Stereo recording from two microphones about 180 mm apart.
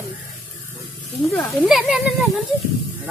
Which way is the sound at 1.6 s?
5° right (ahead or behind).